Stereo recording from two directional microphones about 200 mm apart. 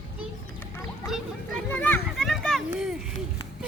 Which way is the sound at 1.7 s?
10° left (ahead or behind).